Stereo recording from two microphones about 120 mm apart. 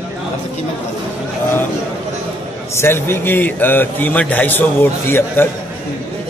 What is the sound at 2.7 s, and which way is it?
A man's voice, 20° left (ahead or behind).